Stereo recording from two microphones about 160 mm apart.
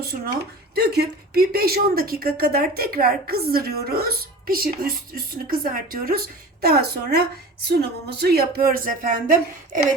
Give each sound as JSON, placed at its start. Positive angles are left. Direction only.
{"t": 0.8, "sound": "a woman's voice", "side_deg": -75}